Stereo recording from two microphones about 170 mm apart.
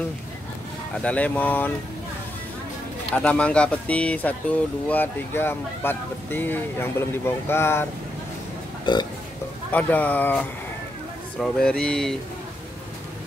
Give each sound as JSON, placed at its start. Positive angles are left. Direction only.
{"t": 0.9, "sound": "speech", "side_deg": 5}
{"t": 3.1, "sound": "speech", "side_deg": 5}
{"t": 8.9, "sound": "speech", "side_deg": 25}
{"t": 9.7, "sound": "speech", "side_deg": 10}